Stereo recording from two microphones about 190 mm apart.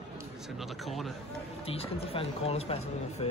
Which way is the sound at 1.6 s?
30° left (ahead or behind).